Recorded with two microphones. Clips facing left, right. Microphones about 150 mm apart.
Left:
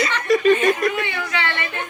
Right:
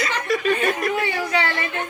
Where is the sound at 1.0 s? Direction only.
35° right (ahead or behind).